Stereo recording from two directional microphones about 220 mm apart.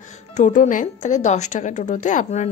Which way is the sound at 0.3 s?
35° left (ahead or behind).